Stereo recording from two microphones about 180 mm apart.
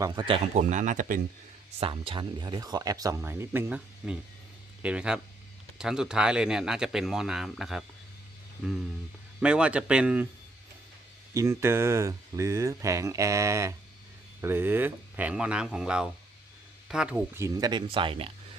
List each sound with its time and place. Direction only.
0.0 s speech: 25° right (ahead or behind)
0.5 s speech: 45° right (ahead or behind)
1.8 s speech: 30° right (ahead or behind); by 10.2 s 5° right (ahead or behind)
11.3 s speech: 15° right (ahead or behind); by 18.3 s 30° right (ahead or behind)